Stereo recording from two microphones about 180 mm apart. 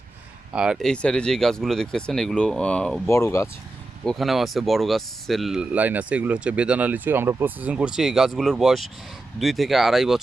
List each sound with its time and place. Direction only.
0.5 s speech: 5° right (ahead or behind)
3.1 s speech: 15° left (ahead or behind)
4.0 s speech: centre (ahead or behind)